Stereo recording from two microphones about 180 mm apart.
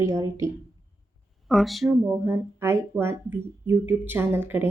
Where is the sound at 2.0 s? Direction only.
15° right (ahead or behind).